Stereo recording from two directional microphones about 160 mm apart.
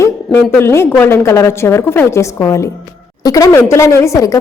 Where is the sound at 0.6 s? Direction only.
15° left (ahead or behind).